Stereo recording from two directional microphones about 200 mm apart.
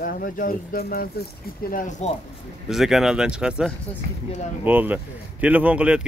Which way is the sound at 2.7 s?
Centre (ahead or behind).